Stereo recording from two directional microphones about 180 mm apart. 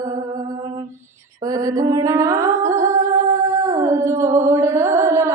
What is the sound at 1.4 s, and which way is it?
Music, 20° right (ahead or behind).